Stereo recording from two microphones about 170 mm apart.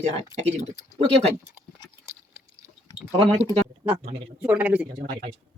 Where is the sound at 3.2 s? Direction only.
40° right (ahead or behind).